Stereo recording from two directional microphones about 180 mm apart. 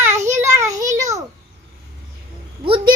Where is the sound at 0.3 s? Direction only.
15° right (ahead or behind).